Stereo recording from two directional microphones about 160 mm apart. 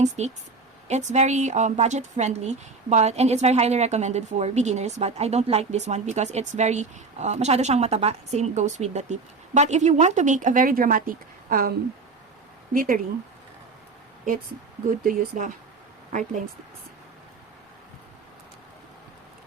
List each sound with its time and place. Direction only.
0.2 s speech: 45° right (ahead or behind); by 11.7 s 60° right (ahead or behind)
12.7 s speech: 60° right (ahead or behind)
14.8 s speech: 55° right (ahead or behind)